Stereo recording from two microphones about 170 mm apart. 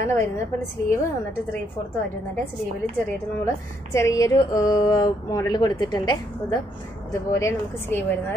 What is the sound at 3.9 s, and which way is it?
A woman's voice, 20° left (ahead or behind).